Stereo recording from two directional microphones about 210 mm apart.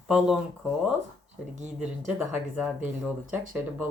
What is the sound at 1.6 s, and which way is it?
Speech, 35° right (ahead or behind).